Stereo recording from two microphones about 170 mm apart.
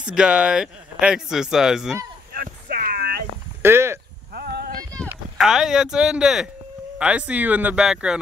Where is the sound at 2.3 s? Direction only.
60° right (ahead or behind).